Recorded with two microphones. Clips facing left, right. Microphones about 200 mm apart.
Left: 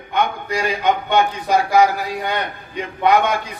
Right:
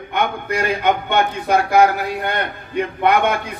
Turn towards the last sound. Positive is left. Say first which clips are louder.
# even
turn(degrees=-55)  # may be behind; listen again after turning